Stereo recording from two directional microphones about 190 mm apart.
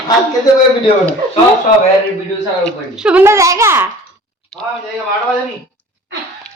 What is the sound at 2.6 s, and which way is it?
A woman's voice, 5° right (ahead or behind).